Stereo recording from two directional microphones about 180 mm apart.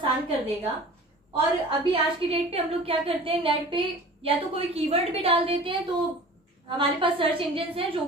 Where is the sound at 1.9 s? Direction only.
30° right (ahead or behind).